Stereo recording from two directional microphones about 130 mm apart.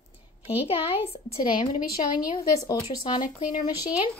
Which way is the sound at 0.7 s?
45° left (ahead or behind).